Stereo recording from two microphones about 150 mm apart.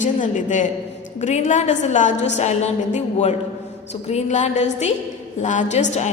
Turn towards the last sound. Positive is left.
turn(degrees=50)  # may be behind; listen again after turning